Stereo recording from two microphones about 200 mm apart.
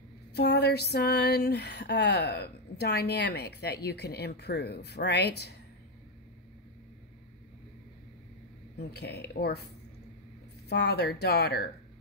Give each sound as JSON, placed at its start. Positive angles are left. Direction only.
{"t": 0.3, "sound": "female singing", "side_deg": 55}
{"t": 8.7, "sound": "female singing", "side_deg": 55}
{"t": 10.7, "sound": "female singing", "side_deg": 55}